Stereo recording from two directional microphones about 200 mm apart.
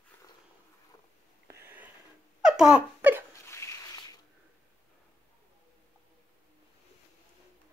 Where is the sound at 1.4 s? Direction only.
10° right (ahead or behind).